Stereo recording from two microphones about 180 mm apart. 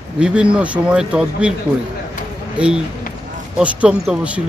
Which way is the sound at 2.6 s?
5° right (ahead or behind).